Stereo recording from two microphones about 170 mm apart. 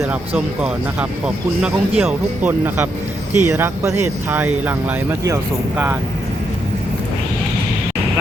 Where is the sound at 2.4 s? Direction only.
10° right (ahead or behind).